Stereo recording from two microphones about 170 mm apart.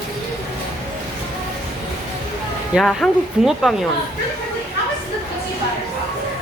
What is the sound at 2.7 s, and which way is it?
Speech, centre (ahead or behind).